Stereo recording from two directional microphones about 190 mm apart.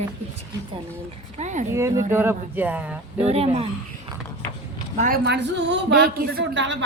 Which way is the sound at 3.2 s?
30° right (ahead or behind).